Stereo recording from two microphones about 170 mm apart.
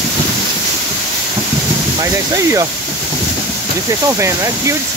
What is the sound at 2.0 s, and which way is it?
Speech, 20° right (ahead or behind).